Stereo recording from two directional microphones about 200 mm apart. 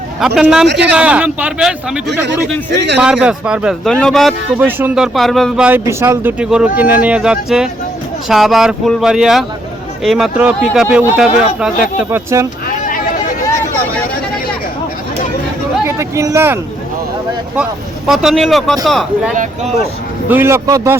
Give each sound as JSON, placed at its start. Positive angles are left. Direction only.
{"t": 0.2, "sound": "a man's voice", "side_deg": -5}
{"t": 3.0, "sound": "a man's voice", "side_deg": -5}
{"t": 12.6, "sound": "a sound", "side_deg": 45}
{"t": 16.0, "sound": "a man's voice", "side_deg": -15}
{"t": 18.1, "sound": "speech", "side_deg": 0}
{"t": 19.3, "sound": "speech", "side_deg": -40}
{"t": 20.3, "sound": "a man's voice", "side_deg": -15}